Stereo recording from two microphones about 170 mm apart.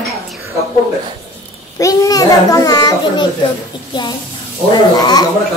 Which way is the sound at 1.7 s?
20° left (ahead or behind).